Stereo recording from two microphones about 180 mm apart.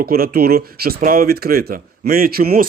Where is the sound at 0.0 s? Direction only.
55° right (ahead or behind).